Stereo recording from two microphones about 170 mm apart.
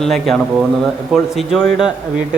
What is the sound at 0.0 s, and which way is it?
A man's voice, centre (ahead or behind).